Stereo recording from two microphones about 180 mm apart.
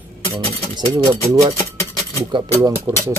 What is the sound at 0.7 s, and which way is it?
Speech, 20° right (ahead or behind).